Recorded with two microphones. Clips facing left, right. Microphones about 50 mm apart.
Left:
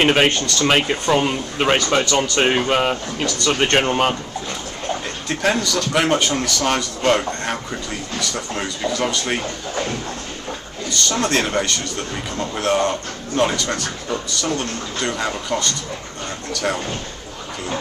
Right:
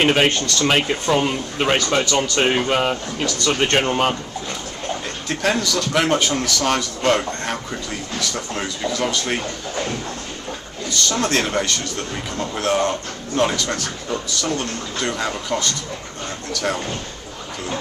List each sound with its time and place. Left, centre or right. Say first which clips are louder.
0.0 s speech: left 1 dB; centre
5.4 s speech: left 1 dB; centre
8.9 s speech: even; centre
10.9 s speech: even; centre